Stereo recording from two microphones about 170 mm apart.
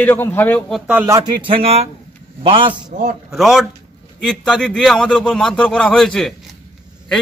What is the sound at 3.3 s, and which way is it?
A man's voice, centre (ahead or behind).